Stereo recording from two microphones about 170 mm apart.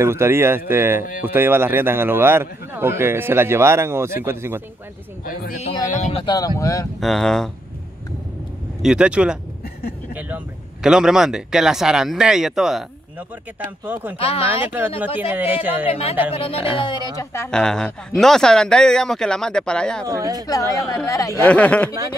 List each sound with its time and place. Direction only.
0.0 s a man's voice: 15° right (ahead or behind)
5.6 s speech: 40° left (ahead or behind)
6.2 s speech: 20° left (ahead or behind)
7.0 s speech: centre (ahead or behind)
8.8 s speech: 5° right (ahead or behind)
13.8 s a man's voice: 10° right (ahead or behind)
14.1 s speech: 35° left (ahead or behind)
14.7 s a man's voice: 10° right (ahead or behind)
15.9 s speech: 35° left (ahead or behind); by 17.5 s 15° left (ahead or behind)
17.5 s speech: 5° left (ahead or behind)
20.1 s speech: 20° right (ahead or behind)
20.4 s speech: 20° left (ahead or behind)
21.5 s speech: 5° left (ahead or behind)